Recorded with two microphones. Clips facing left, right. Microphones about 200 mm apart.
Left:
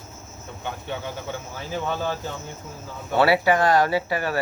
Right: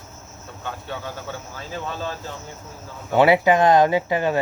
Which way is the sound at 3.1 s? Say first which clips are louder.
Right 3 dB; 20° right (ahead or behind).